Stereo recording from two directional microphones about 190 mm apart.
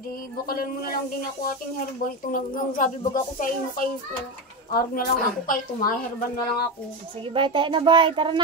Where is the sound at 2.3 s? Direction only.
45° left (ahead or behind).